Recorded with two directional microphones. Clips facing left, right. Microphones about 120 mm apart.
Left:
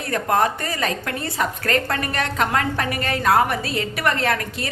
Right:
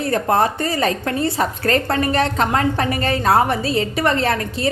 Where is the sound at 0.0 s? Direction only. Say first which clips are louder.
Right 3 dB; 30° right (ahead or behind).